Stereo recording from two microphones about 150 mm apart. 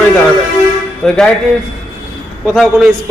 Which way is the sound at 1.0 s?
5° left (ahead or behind).